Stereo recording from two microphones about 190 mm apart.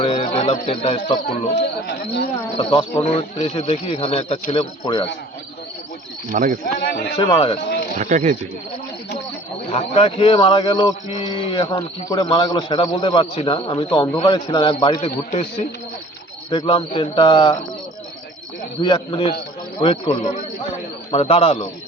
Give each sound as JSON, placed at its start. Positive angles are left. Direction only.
{"t": 0.0, "sound": "speech", "side_deg": 30}
{"t": 2.6, "sound": "a man's voice", "side_deg": 30}
{"t": 6.3, "sound": "speech", "side_deg": -45}
{"t": 6.7, "sound": "a man's voice", "side_deg": 60}
{"t": 7.2, "sound": "a man's voice", "side_deg": 25}
{"t": 7.9, "sound": "speech", "side_deg": -40}
{"t": 9.6, "sound": "a man's voice", "side_deg": 30}
{"t": 18.8, "sound": "a man's voice", "side_deg": 25}